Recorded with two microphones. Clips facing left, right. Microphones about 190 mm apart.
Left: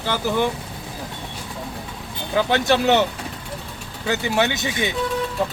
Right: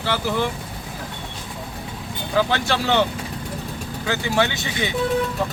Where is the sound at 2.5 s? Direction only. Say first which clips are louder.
Left 4 dB; 20° left (ahead or behind).